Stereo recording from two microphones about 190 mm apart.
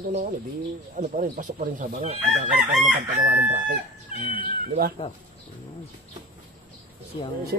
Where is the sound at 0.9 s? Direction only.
40° right (ahead or behind).